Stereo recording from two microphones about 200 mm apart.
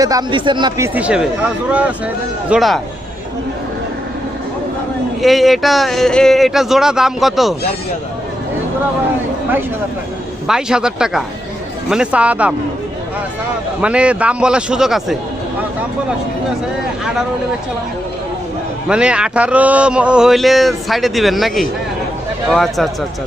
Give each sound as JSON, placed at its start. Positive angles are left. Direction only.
{"t": 0.0, "sound": "speech", "side_deg": -20}
{"t": 0.9, "sound": "speech", "side_deg": -5}
{"t": 2.5, "sound": "speech", "side_deg": 0}
{"t": 5.2, "sound": "speech", "side_deg": 0}
{"t": 10.4, "sound": "speech", "side_deg": -5}
{"t": 13.8, "sound": "speech", "side_deg": -5}
{"t": 18.9, "sound": "speech", "side_deg": -5}